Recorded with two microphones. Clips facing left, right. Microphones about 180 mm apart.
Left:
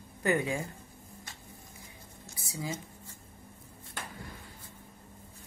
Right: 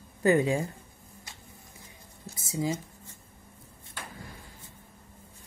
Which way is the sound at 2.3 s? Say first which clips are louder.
Right 7 dB; 20° right (ahead or behind).